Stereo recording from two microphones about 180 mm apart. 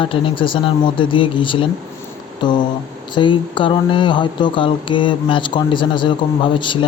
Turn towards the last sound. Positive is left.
turn(degrees=25)  # may be behind; listen again after turning